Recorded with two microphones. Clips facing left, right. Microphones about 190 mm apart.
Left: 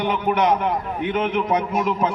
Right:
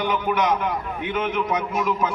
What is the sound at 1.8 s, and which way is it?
Speech, 25° left (ahead or behind).